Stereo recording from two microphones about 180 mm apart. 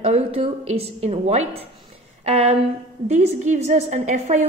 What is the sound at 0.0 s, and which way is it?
A woman's voice, 35° right (ahead or behind).